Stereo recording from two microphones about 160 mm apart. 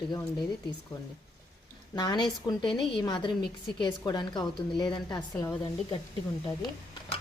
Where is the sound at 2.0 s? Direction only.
25° left (ahead or behind).